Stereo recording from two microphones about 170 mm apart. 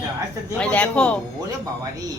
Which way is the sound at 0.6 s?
5° left (ahead or behind).